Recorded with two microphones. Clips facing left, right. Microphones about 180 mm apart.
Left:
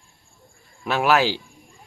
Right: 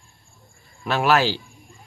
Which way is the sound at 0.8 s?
10° left (ahead or behind).